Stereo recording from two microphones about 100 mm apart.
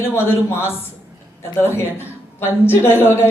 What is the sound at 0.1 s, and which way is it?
A man's voice, 25° left (ahead or behind).